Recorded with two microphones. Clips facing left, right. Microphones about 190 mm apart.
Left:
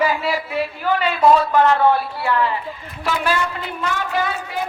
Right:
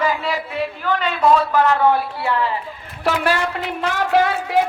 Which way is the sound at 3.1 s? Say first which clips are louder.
Right 2 dB; 65° right (ahead or behind).